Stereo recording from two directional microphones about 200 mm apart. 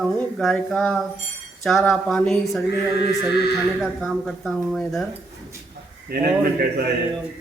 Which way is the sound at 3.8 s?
Centre (ahead or behind).